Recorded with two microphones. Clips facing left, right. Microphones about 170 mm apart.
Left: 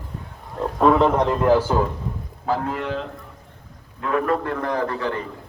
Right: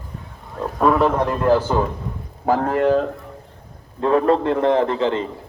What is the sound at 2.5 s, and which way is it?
Speech, 50° right (ahead or behind).